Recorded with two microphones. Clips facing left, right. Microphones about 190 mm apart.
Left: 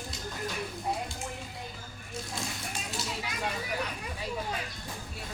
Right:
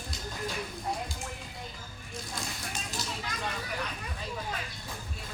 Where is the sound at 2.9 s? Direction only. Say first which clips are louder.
Left 2 dB; 10° left (ahead or behind).